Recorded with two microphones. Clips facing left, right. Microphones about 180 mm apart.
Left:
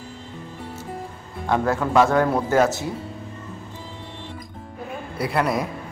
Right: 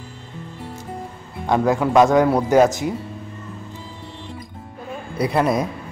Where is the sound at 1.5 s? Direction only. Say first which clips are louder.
Right 3 dB; 15° right (ahead or behind).